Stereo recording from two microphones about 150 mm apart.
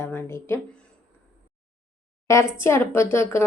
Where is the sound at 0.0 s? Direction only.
15° left (ahead or behind).